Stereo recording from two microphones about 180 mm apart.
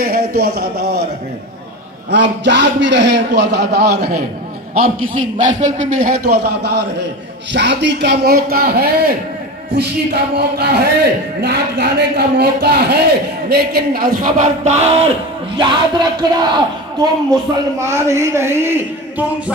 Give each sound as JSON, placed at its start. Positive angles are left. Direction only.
{"t": 0.0, "sound": "speech", "side_deg": -60}
{"t": 2.0, "sound": "a man's voice", "side_deg": -80}
{"t": 5.4, "sound": "speech", "side_deg": -40}
{"t": 15.5, "sound": "a man's voice", "side_deg": -25}